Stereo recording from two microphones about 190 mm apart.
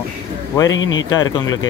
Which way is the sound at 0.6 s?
90° left.